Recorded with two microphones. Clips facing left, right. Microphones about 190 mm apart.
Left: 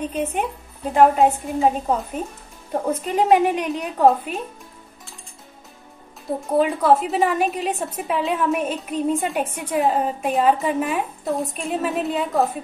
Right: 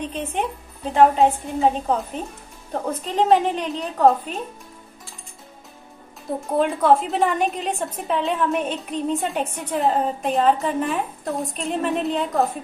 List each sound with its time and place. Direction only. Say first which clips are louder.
0.0 s a woman's voice: left 2 dB; 5° left (ahead or behind)
6.5 s a woman's voice: left 1 dB; 5° left (ahead or behind)